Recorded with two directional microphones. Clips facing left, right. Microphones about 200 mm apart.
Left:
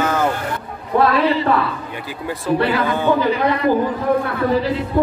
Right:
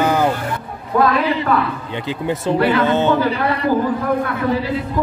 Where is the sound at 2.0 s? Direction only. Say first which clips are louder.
Right 2 dB; 25° right (ahead or behind).